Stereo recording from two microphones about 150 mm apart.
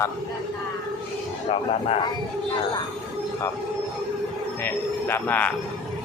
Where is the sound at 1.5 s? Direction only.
40° left (ahead or behind).